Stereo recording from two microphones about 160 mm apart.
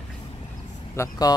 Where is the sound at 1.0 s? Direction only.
25° left (ahead or behind).